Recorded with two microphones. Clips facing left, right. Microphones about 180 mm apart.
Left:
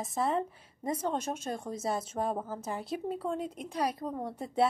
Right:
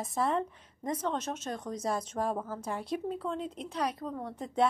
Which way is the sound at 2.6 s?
Centre (ahead or behind).